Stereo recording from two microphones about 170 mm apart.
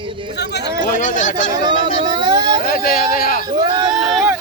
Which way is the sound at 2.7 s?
60° left (ahead or behind).